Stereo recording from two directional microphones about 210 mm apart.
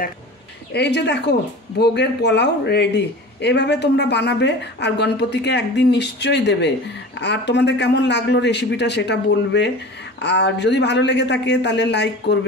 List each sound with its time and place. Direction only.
0.7 s a man's voice: 55° left (ahead or behind)